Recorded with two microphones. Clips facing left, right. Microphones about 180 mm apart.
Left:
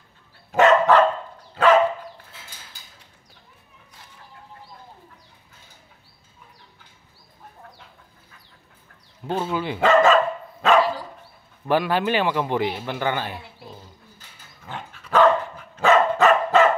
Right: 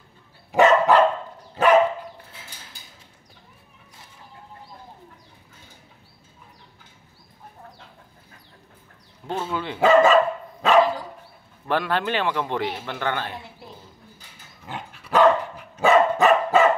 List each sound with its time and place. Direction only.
0.5 s dog: 10° right (ahead or behind)
9.3 s speech: 5° left (ahead or behind)
9.8 s dog: 5° right (ahead or behind)
11.6 s speech: 5° left (ahead or behind)
14.7 s dog: 10° right (ahead or behind)